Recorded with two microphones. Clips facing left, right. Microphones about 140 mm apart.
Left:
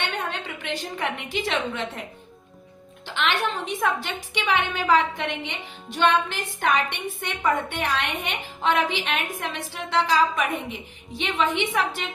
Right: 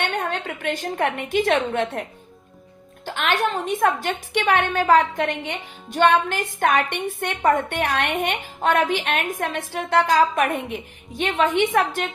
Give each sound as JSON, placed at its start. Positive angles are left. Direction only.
{"t": 0.2, "sound": "a woman's voice", "side_deg": -50}
{"t": 3.1, "sound": "a woman's voice", "side_deg": -45}